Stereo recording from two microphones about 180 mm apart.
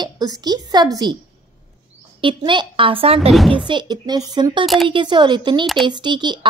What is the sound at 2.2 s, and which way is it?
Speech, 25° right (ahead or behind).